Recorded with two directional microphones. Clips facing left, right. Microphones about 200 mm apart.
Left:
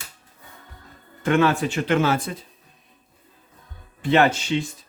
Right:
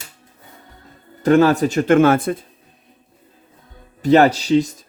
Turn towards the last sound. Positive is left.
turn(degrees=-40)  # may be behind; listen again after turning